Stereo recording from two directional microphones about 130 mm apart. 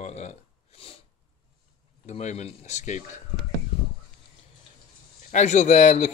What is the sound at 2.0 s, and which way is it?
A man's voice, 60° left (ahead or behind).